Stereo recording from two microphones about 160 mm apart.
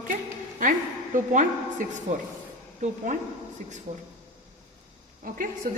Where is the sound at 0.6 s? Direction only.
55° right (ahead or behind).